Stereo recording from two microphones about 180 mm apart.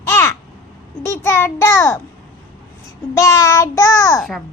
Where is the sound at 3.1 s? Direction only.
15° left (ahead or behind).